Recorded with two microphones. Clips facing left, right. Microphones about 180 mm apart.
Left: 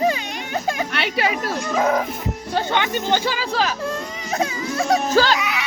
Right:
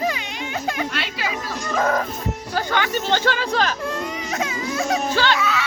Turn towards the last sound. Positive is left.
turn(degrees=15)  # may be behind; listen again after turning